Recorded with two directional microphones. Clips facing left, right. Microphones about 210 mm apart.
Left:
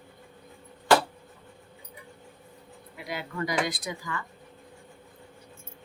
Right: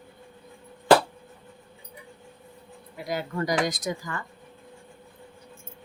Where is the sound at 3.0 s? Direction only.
40° right (ahead or behind).